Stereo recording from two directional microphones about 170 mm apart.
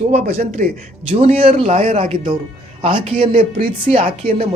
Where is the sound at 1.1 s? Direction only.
35° right (ahead or behind).